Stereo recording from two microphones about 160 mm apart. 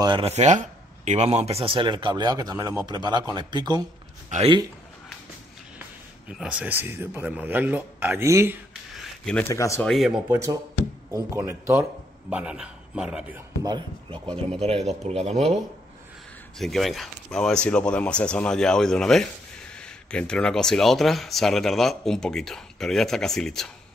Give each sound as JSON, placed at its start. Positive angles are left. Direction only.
{"t": 0.2, "sound": "speech", "side_deg": -45}
{"t": 4.3, "sound": "a man's voice", "side_deg": -50}
{"t": 5.8, "sound": "a man's voice", "side_deg": -5}
{"t": 8.9, "sound": "a sound", "side_deg": 0}
{"t": 9.5, "sound": "speech", "side_deg": 20}
{"t": 9.8, "sound": "speech", "side_deg": 0}
{"t": 10.3, "sound": "speech", "side_deg": -20}
{"t": 12.3, "sound": "speech", "side_deg": -5}
{"t": 13.7, "sound": "a man's voice", "side_deg": -30}
{"t": 16.5, "sound": "speech", "side_deg": 0}